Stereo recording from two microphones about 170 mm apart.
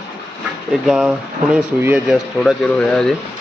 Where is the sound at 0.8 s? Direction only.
5° right (ahead or behind).